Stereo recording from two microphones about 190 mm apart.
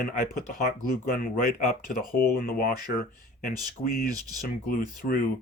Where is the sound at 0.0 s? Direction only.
45° left (ahead or behind).